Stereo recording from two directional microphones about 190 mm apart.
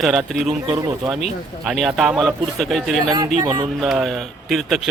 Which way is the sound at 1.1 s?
Centre (ahead or behind).